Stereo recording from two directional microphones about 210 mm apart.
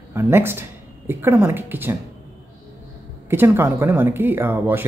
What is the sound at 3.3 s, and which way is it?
Speech, 10° right (ahead or behind).